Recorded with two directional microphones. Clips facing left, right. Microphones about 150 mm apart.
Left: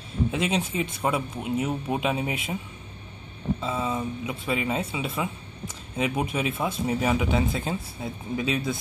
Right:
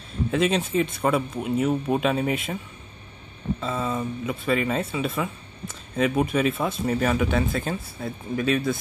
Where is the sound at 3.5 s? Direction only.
10° left (ahead or behind).